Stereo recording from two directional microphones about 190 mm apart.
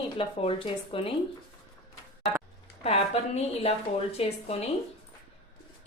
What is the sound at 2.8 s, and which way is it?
A woman's voice, 30° left (ahead or behind).